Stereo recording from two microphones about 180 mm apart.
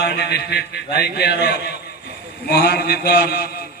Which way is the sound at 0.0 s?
65° left (ahead or behind).